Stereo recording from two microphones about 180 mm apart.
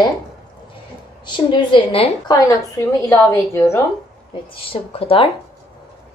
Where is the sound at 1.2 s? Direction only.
25° left (ahead or behind).